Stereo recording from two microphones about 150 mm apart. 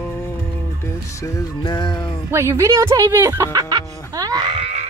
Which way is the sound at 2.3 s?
20° right (ahead or behind).